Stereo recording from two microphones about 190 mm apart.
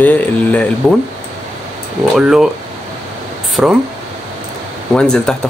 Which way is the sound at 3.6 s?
5° right (ahead or behind).